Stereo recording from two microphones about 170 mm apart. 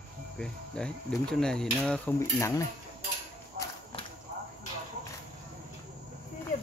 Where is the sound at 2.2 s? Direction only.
20° left (ahead or behind).